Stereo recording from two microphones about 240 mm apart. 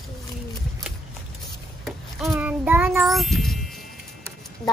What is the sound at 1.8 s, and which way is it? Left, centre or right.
Child singing, centre.